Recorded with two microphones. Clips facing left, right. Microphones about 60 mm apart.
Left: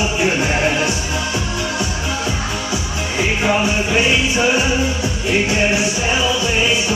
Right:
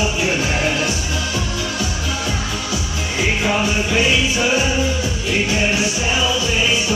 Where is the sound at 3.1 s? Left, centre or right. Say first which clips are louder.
Left 2 dB; centre.